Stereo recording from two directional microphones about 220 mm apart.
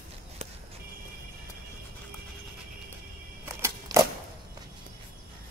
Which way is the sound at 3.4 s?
10° right (ahead or behind).